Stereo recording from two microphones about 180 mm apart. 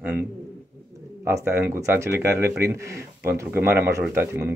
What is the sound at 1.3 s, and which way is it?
Speech, 15° right (ahead or behind).